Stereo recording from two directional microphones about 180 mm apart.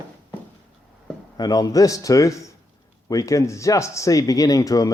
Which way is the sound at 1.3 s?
20° left (ahead or behind).